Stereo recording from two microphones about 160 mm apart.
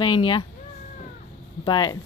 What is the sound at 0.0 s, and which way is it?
Speech, 30° left (ahead or behind).